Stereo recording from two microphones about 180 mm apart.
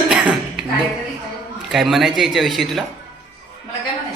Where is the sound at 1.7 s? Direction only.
Centre (ahead or behind).